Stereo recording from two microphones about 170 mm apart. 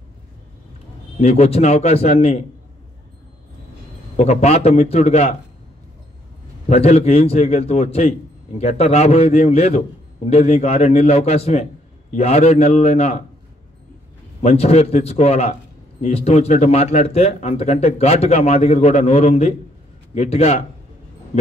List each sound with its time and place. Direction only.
1.2 s a man's voice: 40° left (ahead or behind)
4.2 s a man's voice: 40° left (ahead or behind)
6.7 s a man's voice: 35° left (ahead or behind)
14.4 s a man's voice: 40° left (ahead or behind)